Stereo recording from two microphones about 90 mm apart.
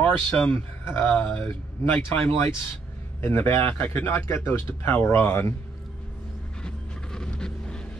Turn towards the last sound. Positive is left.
turn(degrees=10)  # may be behind; listen again after turning